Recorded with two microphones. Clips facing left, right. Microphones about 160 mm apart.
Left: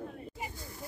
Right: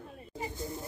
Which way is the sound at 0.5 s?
25° right (ahead or behind).